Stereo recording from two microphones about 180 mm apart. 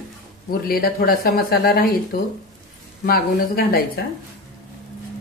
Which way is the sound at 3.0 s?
60° left (ahead or behind).